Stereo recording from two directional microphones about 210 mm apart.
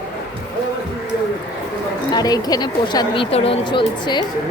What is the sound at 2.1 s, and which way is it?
A woman's voice, 20° left (ahead or behind).